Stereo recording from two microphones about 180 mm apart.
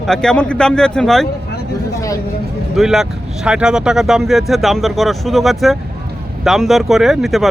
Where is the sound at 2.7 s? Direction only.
Centre (ahead or behind).